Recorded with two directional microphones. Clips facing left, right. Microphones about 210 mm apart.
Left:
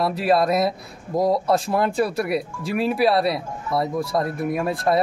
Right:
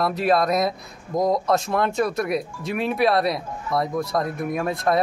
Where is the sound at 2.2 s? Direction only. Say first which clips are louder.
Left 1 dB; 5° left (ahead or behind).